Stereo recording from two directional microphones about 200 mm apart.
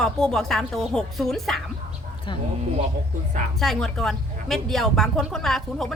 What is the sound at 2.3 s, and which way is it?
Speech, 25° left (ahead or behind).